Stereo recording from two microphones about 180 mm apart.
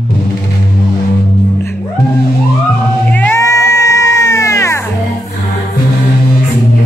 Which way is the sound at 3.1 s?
10° left (ahead or behind).